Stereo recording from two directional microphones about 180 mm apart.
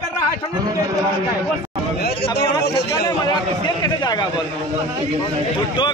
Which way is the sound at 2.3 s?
70° left (ahead or behind).